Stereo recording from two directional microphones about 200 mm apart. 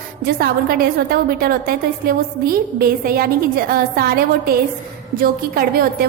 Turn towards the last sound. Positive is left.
turn(degrees=-50)  # may be behind; listen again after turning